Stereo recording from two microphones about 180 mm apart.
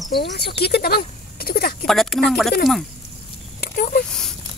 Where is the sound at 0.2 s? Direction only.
65° left (ahead or behind).